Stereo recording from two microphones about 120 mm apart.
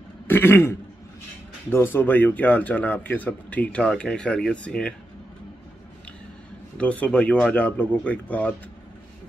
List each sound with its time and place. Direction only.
0.3 s throat clearing: 20° left (ahead or behind)
1.7 s speech: 20° left (ahead or behind)
6.8 s speech: 10° left (ahead or behind)